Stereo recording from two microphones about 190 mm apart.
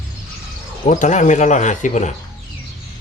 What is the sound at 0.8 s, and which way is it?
Speech, 40° left (ahead or behind).